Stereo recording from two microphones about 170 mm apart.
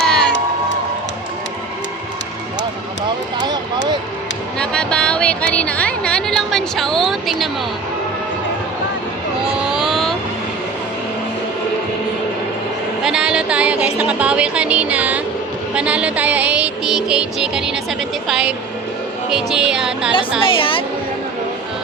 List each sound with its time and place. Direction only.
0.0 s crowd: 5° left (ahead or behind)
3.4 s a sound: 25° right (ahead or behind)
4.5 s a sound: 5° left (ahead or behind)
9.6 s vehicle: centre (ahead or behind)
13.1 s music: 5° right (ahead or behind)
20.4 s a woman's voice: 30° left (ahead or behind)